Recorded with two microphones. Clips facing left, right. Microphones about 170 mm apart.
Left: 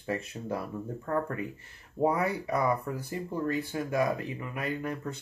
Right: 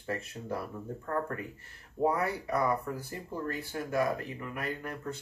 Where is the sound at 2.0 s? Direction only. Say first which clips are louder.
Left 2 dB; 15° left (ahead or behind).